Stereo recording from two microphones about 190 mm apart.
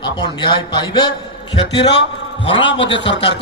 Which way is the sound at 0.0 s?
25° left (ahead or behind).